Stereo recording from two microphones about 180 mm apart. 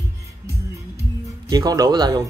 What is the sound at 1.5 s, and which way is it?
Speech, 20° right (ahead or behind).